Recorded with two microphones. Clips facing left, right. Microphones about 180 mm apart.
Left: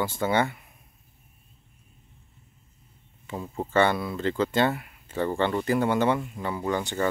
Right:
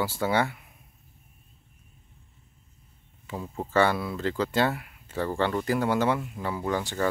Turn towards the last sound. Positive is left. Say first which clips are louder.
# left 1 dB
turn(degrees=0)  # may be behind; listen again after turning